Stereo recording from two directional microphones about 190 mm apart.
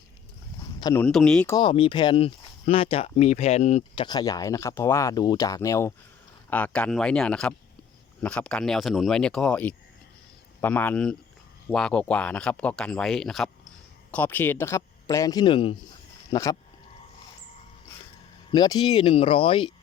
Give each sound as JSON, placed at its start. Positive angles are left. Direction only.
{"t": 0.8, "sound": "speech", "side_deg": 20}
{"t": 1.0, "sound": "speech", "side_deg": 5}
{"t": 1.5, "sound": "speech", "side_deg": 25}
{"t": 4.0, "sound": "speech", "side_deg": 20}
{"t": 18.5, "sound": "speech", "side_deg": 20}